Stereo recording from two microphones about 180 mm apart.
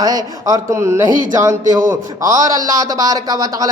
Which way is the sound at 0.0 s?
20° right (ahead or behind).